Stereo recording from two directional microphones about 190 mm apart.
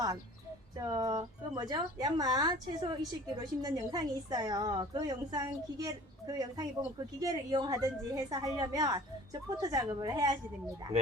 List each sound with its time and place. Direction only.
0.8 s a woman's voice: 15° right (ahead or behind)